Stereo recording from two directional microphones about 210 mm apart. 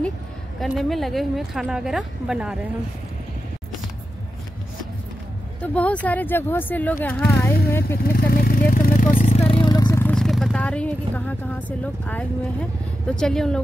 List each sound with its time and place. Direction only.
0.6 s a woman's voice: centre (ahead or behind)
5.6 s speech: 5° left (ahead or behind)
8.1 s a sound: 45° left (ahead or behind); by 13.6 s 5° left (ahead or behind)